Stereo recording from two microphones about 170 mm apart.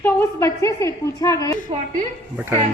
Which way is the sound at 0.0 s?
15° left (ahead or behind).